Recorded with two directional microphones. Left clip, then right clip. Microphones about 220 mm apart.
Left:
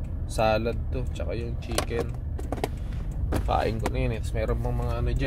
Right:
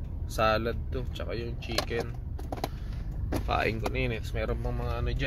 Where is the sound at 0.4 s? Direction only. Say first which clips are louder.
Left 2 dB; centre (ahead or behind).